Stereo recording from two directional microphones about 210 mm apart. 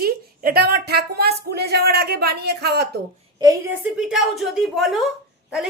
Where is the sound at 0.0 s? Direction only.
45° right (ahead or behind).